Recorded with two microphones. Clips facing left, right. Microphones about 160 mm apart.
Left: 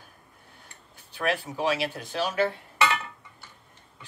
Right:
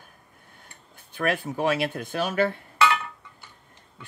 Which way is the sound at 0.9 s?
50° right (ahead or behind).